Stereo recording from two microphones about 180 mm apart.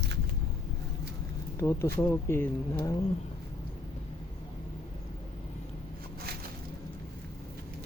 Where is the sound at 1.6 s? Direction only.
15° left (ahead or behind).